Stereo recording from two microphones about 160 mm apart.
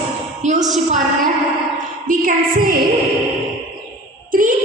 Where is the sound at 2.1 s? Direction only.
60° right (ahead or behind).